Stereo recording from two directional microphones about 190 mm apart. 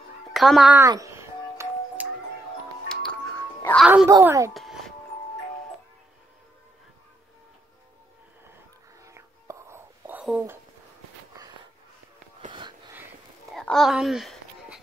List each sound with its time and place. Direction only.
0.3 s a child's voice: centre (ahead or behind)
0.8 s music: 15° right (ahead or behind)
2.9 s music: 5° left (ahead or behind)
3.8 s speech: 5° right (ahead or behind)
4.6 s music: centre (ahead or behind)
9.0 s whispering: 15° right (ahead or behind)
12.9 s a sound: 10° right (ahead or behind)
13.6 s a sound: centre (ahead or behind)